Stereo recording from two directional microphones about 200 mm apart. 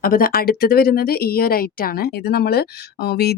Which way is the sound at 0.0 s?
45° left (ahead or behind).